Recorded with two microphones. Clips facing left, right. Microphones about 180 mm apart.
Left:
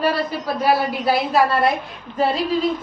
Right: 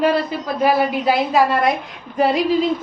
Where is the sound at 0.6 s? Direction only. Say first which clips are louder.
Right 3 dB; 15° right (ahead or behind).